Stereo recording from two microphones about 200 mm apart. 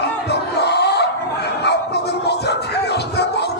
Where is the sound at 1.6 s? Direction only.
55° left (ahead or behind).